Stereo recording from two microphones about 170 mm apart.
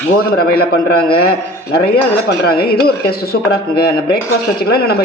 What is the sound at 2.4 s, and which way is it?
Speech, 65° left (ahead or behind).